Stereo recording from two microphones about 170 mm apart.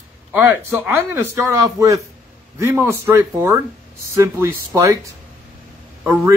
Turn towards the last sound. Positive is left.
turn(degrees=-10)  # may be behind; listen again after turning